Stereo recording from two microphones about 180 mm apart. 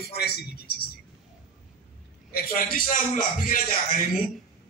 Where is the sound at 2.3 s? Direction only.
55° left (ahead or behind).